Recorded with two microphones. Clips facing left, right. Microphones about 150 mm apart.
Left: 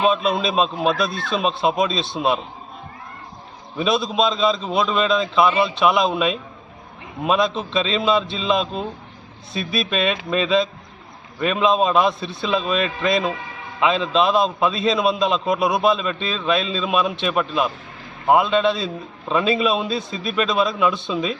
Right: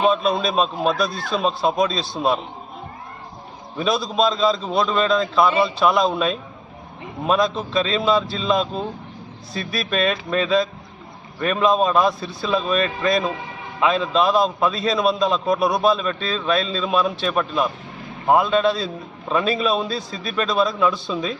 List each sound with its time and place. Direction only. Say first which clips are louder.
0.1 s a man's voice: even; 20° left (ahead or behind)
3.8 s a man's voice: even; 20° left (ahead or behind)
6.0 s a man's voice: even; 20° left (ahead or behind)